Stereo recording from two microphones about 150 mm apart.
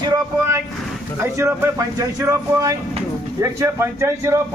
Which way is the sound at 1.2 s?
20° right (ahead or behind).